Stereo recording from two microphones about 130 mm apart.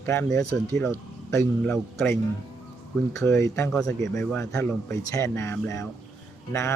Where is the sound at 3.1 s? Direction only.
25° left (ahead or behind).